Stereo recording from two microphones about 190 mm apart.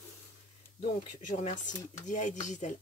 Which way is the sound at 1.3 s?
40° left (ahead or behind).